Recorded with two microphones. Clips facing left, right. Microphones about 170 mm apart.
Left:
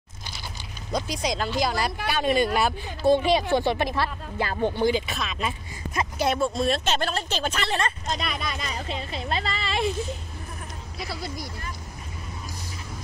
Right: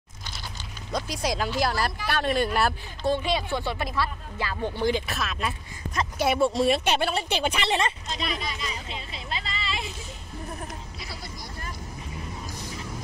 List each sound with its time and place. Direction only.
0.9 s speech: 5° right (ahead or behind)
3.5 s speech: 25° left (ahead or behind)
4.8 s speech: centre (ahead or behind); by 7.9 s 20° right (ahead or behind)
8.1 s speech: 50° left (ahead or behind)